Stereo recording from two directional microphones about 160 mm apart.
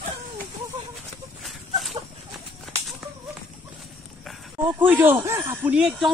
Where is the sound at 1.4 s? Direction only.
Centre (ahead or behind).